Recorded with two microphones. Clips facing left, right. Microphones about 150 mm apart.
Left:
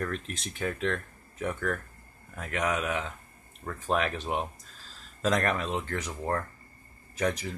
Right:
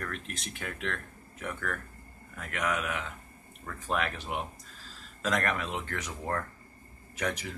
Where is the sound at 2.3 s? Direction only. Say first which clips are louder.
Left 3 dB; 30° left (ahead or behind).